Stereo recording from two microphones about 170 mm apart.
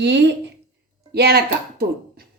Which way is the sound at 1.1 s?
70° right (ahead or behind).